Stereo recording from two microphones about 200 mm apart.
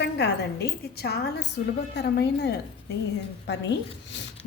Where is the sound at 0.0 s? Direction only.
55° left (ahead or behind).